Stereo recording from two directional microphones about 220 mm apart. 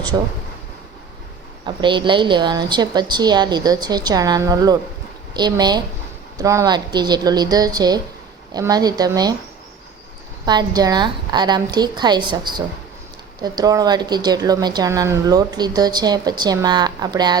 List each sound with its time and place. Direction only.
0.1 s a woman's voice: 15° right (ahead or behind)
1.6 s a woman's voice: 20° right (ahead or behind)
10.4 s a woman's voice: 20° right (ahead or behind)